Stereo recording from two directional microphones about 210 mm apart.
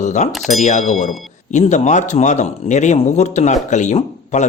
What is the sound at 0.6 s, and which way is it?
Speech, 35° left (ahead or behind).